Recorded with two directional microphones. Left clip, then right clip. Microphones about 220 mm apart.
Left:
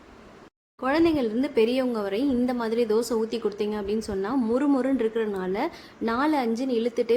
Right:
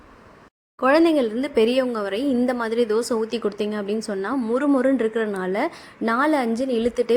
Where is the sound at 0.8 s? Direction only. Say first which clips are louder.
Right 6 dB; 25° right (ahead or behind).